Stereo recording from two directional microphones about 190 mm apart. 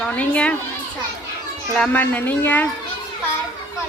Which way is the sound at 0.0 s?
5° left (ahead or behind).